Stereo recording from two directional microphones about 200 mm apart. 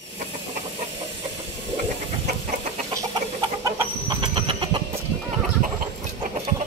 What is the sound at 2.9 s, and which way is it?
Chicken, 15° right (ahead or behind).